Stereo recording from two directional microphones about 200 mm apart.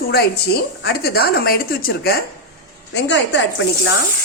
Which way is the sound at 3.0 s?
60° left (ahead or behind).